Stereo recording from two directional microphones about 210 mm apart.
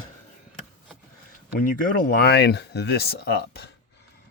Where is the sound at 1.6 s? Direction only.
45° left (ahead or behind).